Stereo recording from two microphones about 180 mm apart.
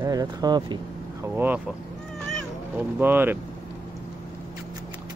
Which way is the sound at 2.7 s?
10° right (ahead or behind).